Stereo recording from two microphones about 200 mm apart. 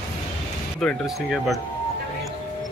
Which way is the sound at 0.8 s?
Centre (ahead or behind).